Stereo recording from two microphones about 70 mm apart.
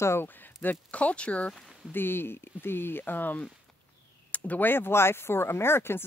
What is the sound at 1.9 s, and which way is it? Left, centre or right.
Speech, left.